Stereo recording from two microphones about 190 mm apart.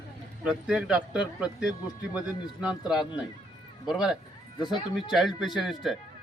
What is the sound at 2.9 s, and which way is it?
Speech, 5° right (ahead or behind).